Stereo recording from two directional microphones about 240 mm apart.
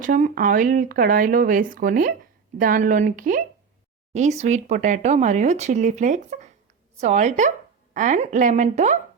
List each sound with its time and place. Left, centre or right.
0.0 s speech: right